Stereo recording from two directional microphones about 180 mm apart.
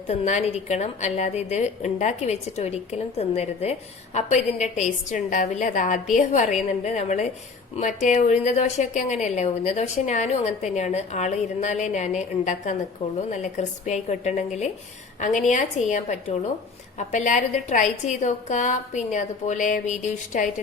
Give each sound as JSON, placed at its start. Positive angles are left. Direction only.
{"t": 0.1, "sound": "a woman's voice", "side_deg": 40}